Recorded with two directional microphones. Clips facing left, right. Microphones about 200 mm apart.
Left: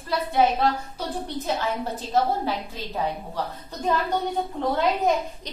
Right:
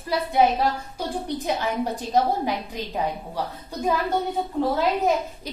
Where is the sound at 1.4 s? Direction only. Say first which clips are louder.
Right 2 dB; 15° right (ahead or behind).